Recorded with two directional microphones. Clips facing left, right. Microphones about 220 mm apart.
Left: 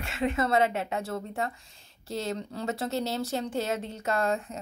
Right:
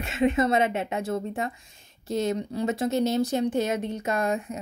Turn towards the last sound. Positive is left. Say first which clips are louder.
# right 2 dB
turn(degrees=-15)  # may be behind; listen again after turning